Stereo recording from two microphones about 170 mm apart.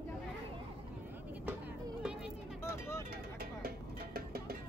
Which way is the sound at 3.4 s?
65° right (ahead or behind).